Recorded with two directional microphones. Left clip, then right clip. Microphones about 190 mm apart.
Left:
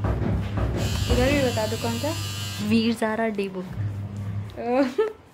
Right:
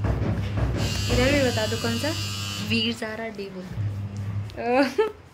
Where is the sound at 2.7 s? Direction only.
40° left (ahead or behind).